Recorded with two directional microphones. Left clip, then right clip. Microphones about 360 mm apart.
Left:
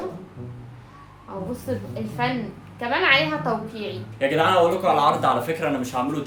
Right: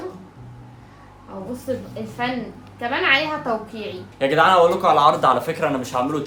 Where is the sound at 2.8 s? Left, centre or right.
Centre.